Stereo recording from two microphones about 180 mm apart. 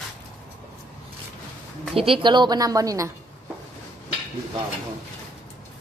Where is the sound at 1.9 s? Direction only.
30° right (ahead or behind).